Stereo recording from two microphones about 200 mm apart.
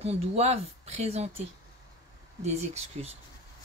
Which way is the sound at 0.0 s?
30° right (ahead or behind).